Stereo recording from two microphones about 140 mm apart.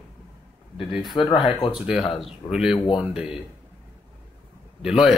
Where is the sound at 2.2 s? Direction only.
5° right (ahead or behind).